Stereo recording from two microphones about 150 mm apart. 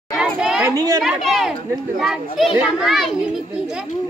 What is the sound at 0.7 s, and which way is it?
Speech, 25° right (ahead or behind).